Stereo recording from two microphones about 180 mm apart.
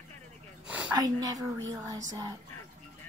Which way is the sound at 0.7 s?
5° right (ahead or behind).